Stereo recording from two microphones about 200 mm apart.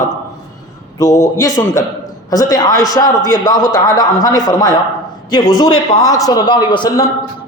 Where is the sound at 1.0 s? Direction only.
15° left (ahead or behind).